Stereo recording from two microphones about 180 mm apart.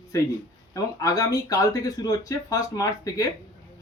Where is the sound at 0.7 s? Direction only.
20° left (ahead or behind).